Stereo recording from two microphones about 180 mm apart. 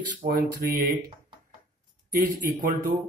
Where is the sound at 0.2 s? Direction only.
35° right (ahead or behind).